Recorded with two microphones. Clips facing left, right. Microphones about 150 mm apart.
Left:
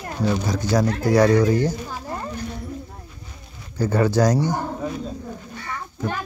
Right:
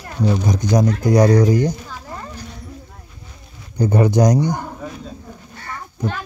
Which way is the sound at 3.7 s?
15° right (ahead or behind).